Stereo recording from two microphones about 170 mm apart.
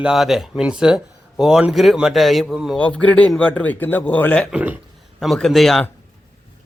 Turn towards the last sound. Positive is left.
turn(degrees=0)  # may be behind; listen again after turning